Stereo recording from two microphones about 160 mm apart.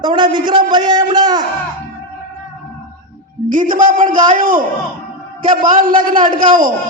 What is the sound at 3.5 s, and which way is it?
A man's voice, 55° right (ahead or behind).